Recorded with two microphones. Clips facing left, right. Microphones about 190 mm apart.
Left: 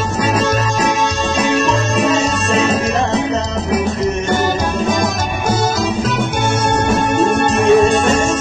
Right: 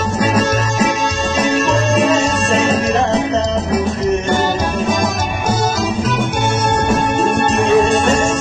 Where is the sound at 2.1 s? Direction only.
35° right (ahead or behind).